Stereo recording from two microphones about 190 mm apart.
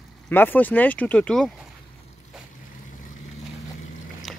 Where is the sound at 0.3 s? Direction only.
10° left (ahead or behind).